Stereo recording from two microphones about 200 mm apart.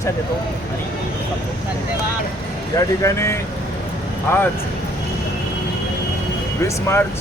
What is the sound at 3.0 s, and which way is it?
Speech, 15° left (ahead or behind).